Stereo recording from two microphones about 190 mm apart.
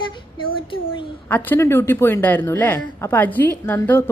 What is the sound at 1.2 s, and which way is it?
A woman's voice, 10° left (ahead or behind).